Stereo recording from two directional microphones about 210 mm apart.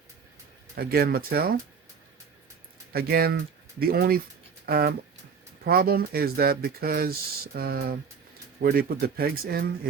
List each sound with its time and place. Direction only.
0.8 s speech: 45° right (ahead or behind)
2.9 s speech: 45° right (ahead or behind)